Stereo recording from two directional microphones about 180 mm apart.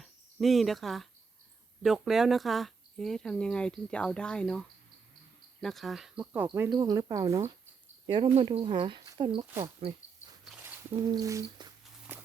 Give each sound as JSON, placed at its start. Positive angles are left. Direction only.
{"t": 0.0, "sound": "speech", "side_deg": 0}
{"t": 5.6, "sound": "speech", "side_deg": 0}
{"t": 11.0, "sound": "speech", "side_deg": -20}
{"t": 12.1, "sound": "walk", "side_deg": -10}